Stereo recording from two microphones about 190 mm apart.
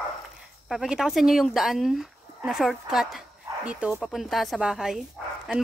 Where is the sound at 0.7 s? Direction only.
Centre (ahead or behind).